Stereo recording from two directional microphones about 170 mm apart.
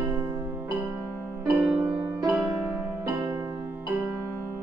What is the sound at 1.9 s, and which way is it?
Music, 25° right (ahead or behind).